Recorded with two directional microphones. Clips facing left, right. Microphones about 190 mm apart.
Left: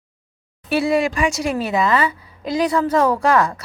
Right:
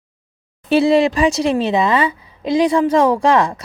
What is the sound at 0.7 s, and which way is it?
A woman's voice, 30° right (ahead or behind).